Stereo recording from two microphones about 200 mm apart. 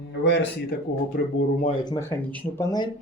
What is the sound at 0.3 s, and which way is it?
Speech, 60° left (ahead or behind).